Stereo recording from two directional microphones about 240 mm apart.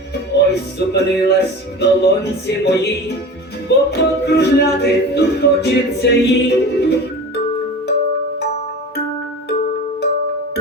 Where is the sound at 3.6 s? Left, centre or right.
Left.